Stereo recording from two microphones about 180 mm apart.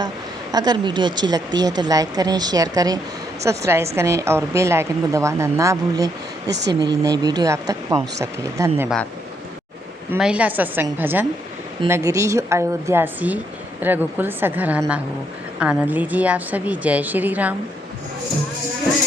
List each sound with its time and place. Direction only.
0.5 s a woman's voice: 25° right (ahead or behind)
6.5 s speech: 70° right (ahead or behind)
6.7 s speech: 20° right (ahead or behind)
10.1 s a woman's voice: 5° right (ahead or behind)